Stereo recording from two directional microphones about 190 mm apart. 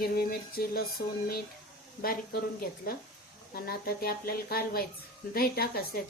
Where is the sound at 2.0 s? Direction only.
50° left (ahead or behind).